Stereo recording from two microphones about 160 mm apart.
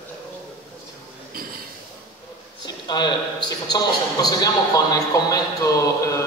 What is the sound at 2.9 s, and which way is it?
A man's voice, 25° left (ahead or behind).